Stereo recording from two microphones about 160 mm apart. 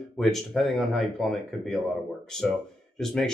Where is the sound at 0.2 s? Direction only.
Centre (ahead or behind).